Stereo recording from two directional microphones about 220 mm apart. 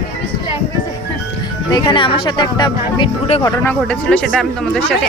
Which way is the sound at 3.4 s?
10° left (ahead or behind).